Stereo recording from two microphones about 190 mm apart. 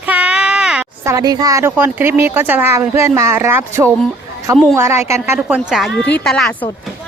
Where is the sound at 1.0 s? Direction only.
20° right (ahead or behind).